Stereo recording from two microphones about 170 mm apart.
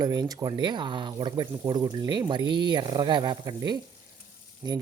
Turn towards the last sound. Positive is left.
turn(degrees=-25)  # may be behind; listen again after turning